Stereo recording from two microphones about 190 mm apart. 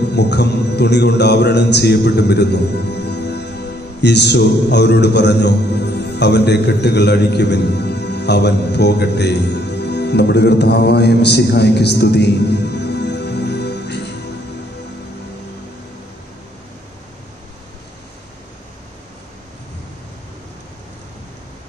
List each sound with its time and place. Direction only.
0.1 s speech: 65° left (ahead or behind)